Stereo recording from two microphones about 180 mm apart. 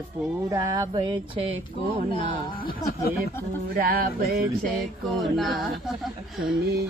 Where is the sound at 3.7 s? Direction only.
55° right (ahead or behind).